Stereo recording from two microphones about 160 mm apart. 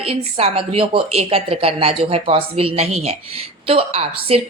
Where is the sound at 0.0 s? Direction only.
35° right (ahead or behind).